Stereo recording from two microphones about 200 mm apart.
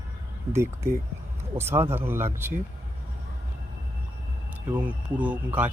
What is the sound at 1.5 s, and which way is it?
Speech, 10° right (ahead or behind).